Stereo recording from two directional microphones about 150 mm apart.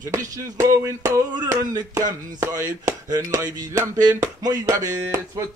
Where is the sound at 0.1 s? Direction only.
20° right (ahead or behind).